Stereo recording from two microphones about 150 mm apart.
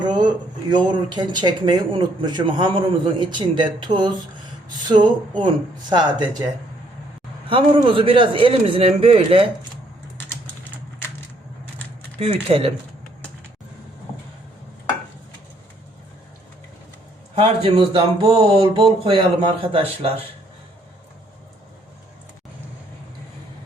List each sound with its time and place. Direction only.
0.0 s a sound: 30° right (ahead or behind)
0.9 s speech: 30° right (ahead or behind)
7.5 s a man's voice: 35° right (ahead or behind)
12.2 s a man's voice: 40° right (ahead or behind)
17.3 s a man's voice: 40° right (ahead or behind)